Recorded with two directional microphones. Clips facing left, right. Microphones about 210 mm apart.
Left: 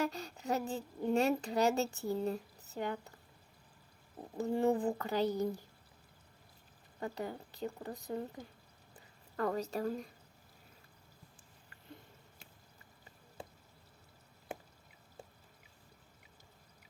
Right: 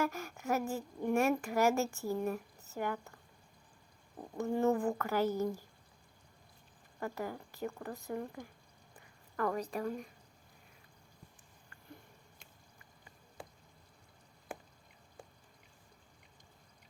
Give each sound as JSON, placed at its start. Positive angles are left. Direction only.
{"t": 0.0, "sound": "a woman's voice", "side_deg": 20}
{"t": 4.4, "sound": "a woman's voice", "side_deg": 20}
{"t": 7.0, "sound": "a woman's voice", "side_deg": 20}